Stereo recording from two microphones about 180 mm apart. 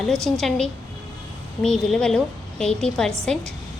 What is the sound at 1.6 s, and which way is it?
A woman's voice, 5° left (ahead or behind).